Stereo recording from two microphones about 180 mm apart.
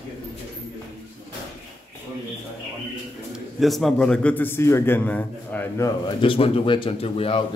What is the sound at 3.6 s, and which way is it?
A man's voice, centre (ahead or behind).